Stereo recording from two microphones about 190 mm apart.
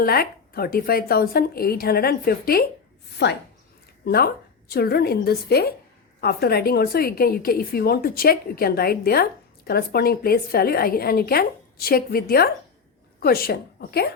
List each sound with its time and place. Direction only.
0.0 s a woman's voice: 50° left (ahead or behind)
3.2 s a woman's voice: 65° left (ahead or behind)